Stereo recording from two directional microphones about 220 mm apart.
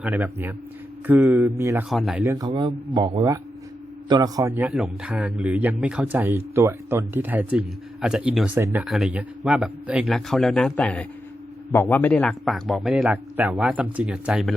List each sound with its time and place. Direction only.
0.0 s a man's voice: 5° right (ahead or behind)
1.9 s a man's voice: centre (ahead or behind)
2.2 s a man's voice: 15° right (ahead or behind)